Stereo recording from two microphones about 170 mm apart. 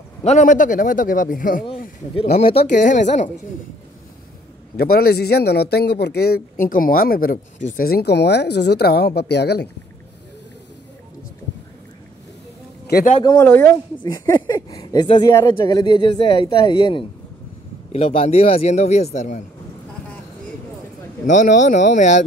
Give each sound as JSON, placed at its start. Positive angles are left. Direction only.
{"t": 0.2, "sound": "a man's voice", "side_deg": 45}
{"t": 2.1, "sound": "a man's voice", "side_deg": 35}
{"t": 4.7, "sound": "a man's voice", "side_deg": 65}
{"t": 12.8, "sound": "a sound", "side_deg": 65}
{"t": 13.2, "sound": "speech", "side_deg": 25}
{"t": 13.5, "sound": "speech", "side_deg": 10}
{"t": 17.9, "sound": "a man's voice", "side_deg": 40}
{"t": 21.3, "sound": "a man's voice", "side_deg": 45}